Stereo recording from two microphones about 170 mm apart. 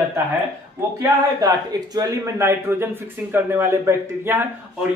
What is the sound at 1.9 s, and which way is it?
Speech, 20° right (ahead or behind).